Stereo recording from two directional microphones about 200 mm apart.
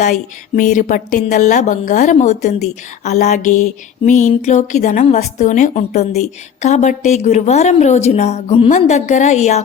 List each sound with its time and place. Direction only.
0.0 s speech: 40° left (ahead or behind)